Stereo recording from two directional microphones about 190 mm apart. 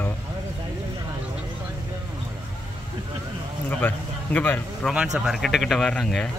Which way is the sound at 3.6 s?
10° left (ahead or behind).